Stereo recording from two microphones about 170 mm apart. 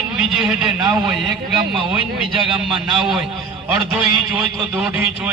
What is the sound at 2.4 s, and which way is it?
A man's voice, centre (ahead or behind).